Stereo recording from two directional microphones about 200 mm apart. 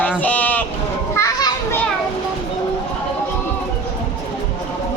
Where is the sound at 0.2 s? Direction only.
10° left (ahead or behind).